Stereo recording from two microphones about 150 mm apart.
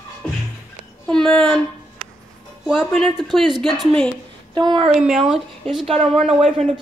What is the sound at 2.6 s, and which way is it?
Speech, 5° right (ahead or behind).